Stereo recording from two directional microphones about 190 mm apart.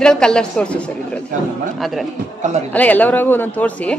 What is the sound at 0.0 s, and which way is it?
A woman's voice, 5° left (ahead or behind).